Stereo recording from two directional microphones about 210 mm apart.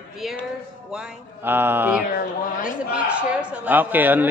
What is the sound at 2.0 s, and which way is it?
Mantra, 40° left (ahead or behind).